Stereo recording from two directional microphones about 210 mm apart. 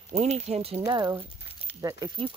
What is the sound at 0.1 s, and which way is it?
Speech, 30° right (ahead or behind).